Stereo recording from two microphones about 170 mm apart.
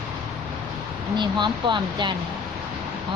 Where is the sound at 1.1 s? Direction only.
25° right (ahead or behind).